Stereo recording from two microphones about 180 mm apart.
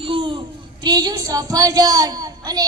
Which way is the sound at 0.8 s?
20° right (ahead or behind).